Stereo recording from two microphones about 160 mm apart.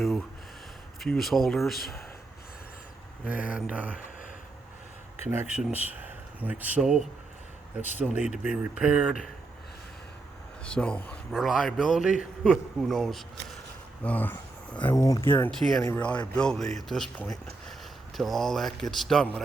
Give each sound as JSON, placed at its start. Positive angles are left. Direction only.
{"t": 0.9, "sound": "speech", "side_deg": 0}
{"t": 3.2, "sound": "speech", "side_deg": -10}
{"t": 5.2, "sound": "speech", "side_deg": -15}
{"t": 10.6, "sound": "a man's voice", "side_deg": 5}
{"t": 11.3, "sound": "speech", "side_deg": 0}
{"t": 14.9, "sound": "speech", "side_deg": 20}
{"t": 15.4, "sound": "speech", "side_deg": 0}
{"t": 15.8, "sound": "speech", "side_deg": 10}